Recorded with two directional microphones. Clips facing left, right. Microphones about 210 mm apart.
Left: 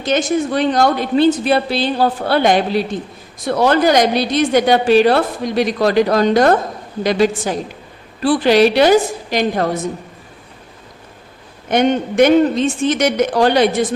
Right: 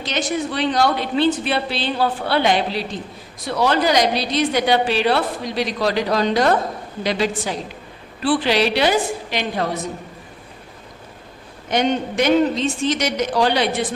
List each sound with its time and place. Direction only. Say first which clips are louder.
0.0 s a woman's voice: left 6 dB; 45° left (ahead or behind)
11.7 s a woman's voice: left 5 dB; 55° left (ahead or behind)